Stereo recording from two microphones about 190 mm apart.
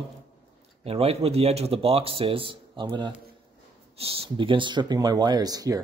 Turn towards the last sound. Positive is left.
turn(degrees=-20)  # may be behind; listen again after turning